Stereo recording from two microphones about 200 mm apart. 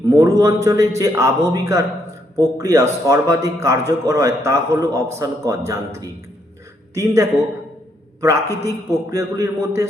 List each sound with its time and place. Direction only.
0.1 s a man's voice: 15° right (ahead or behind)